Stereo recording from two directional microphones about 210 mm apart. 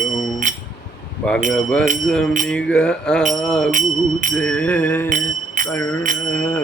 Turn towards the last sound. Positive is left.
turn(degrees=-40)  # may be behind; listen again after turning